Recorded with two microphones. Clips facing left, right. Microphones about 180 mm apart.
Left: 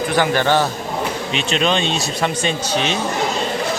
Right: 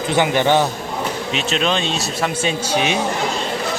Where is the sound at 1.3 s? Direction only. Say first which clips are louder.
Left 1 dB; centre (ahead or behind).